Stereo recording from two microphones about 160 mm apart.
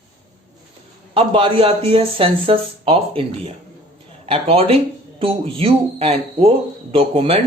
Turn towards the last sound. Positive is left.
turn(degrees=-35)  # may be behind; listen again after turning